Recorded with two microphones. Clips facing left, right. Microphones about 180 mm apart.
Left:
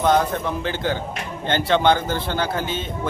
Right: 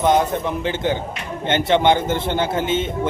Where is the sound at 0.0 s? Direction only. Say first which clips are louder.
Right 2 dB; 20° right (ahead or behind).